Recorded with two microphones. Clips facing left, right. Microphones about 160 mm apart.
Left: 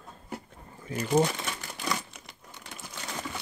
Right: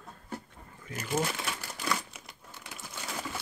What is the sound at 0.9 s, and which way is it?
Crumpling, 5° right (ahead or behind).